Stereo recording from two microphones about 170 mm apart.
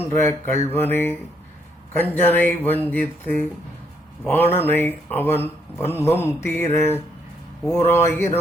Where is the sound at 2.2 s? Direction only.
10° left (ahead or behind).